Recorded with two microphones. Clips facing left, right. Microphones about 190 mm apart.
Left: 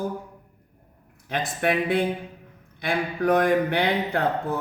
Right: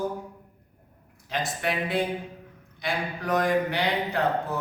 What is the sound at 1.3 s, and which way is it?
Speech, 55° left (ahead or behind).